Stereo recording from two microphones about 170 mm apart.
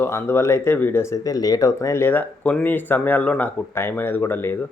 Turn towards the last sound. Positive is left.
turn(degrees=10)  # may be behind; listen again after turning